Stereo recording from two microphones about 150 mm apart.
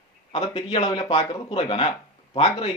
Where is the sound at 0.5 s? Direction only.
30° left (ahead or behind).